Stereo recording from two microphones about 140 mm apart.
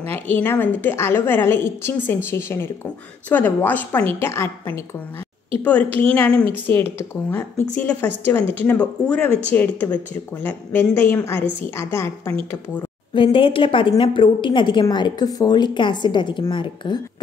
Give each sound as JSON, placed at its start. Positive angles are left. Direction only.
{"t": 0.1, "sound": "a woman's voice", "side_deg": 15}
{"t": 13.1, "sound": "a woman's voice", "side_deg": 40}